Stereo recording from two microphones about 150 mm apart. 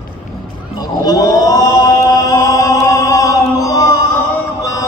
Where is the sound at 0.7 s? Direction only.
25° left (ahead or behind).